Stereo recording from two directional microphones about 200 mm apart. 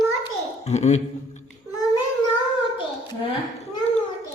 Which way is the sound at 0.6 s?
35° left (ahead or behind).